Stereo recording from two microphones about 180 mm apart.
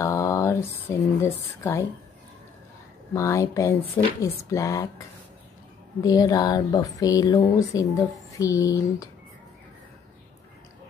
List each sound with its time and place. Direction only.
0.0 s speech: 15° left (ahead or behind)
3.2 s speech: 15° left (ahead or behind)
6.0 s speech: 20° left (ahead or behind)